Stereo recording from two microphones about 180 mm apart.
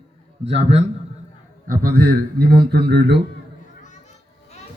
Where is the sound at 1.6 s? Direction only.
50° right (ahead or behind).